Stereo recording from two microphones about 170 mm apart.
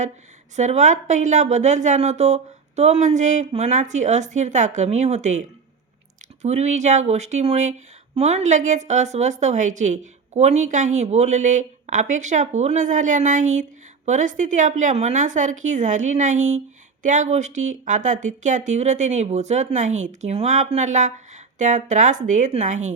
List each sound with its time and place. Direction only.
0.5 s speech: 45° right (ahead or behind)